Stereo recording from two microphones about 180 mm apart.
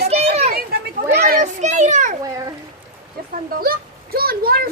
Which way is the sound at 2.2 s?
20° right (ahead or behind).